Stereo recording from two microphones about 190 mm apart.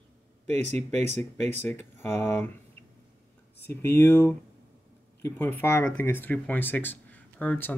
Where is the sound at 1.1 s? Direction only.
35° right (ahead or behind).